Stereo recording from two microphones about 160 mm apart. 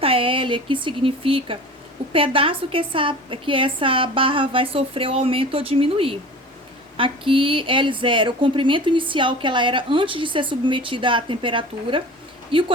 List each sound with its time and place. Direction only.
0.0 s speech: 35° right (ahead or behind)